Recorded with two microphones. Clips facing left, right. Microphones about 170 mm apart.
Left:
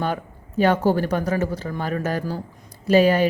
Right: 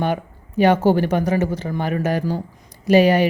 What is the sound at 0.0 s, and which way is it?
Speech, 15° right (ahead or behind).